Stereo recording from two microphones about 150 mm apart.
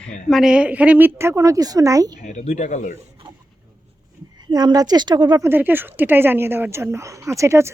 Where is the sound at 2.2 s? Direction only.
50° left (ahead or behind).